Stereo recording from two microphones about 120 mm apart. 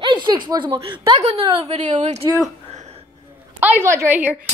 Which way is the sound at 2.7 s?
70° right (ahead or behind).